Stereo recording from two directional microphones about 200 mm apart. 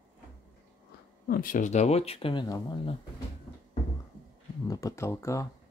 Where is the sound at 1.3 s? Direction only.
45° left (ahead or behind); by 3.0 s 20° left (ahead or behind).